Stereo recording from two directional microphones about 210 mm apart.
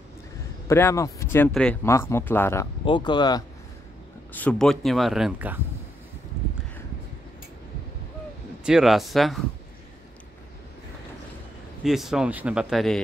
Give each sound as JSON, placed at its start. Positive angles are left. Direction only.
{"t": 0.7, "sound": "speech", "side_deg": 15}
{"t": 4.3, "sound": "speech", "side_deg": 5}
{"t": 8.6, "sound": "speech", "side_deg": 0}
{"t": 11.8, "sound": "speech", "side_deg": 0}